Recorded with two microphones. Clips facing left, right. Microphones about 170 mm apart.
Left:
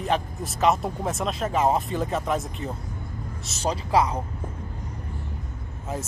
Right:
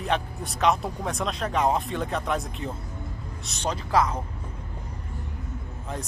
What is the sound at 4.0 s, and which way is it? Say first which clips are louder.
Speech: left 1 dB; 10° left (ahead or behind).